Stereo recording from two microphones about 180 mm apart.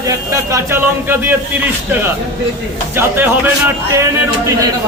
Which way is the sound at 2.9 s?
10° right (ahead or behind).